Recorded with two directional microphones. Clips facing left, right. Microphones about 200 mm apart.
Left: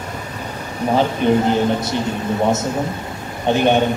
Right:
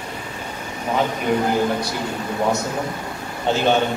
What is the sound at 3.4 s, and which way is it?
Speech, 20° left (ahead or behind).